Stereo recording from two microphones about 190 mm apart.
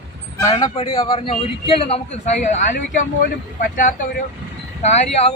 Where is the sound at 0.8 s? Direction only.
30° left (ahead or behind).